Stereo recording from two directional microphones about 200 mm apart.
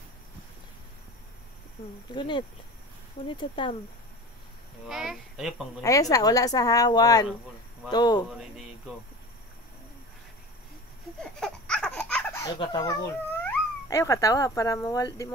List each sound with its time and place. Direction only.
2.0 s speech: 25° left (ahead or behind)
4.8 s speech: centre (ahead or behind)
5.8 s a woman's voice: 15° left (ahead or behind)
8.3 s speech: centre (ahead or behind)
11.1 s baby laughter: 5° left (ahead or behind); by 13.0 s 20° left (ahead or behind)
13.4 s speech: 10° left (ahead or behind)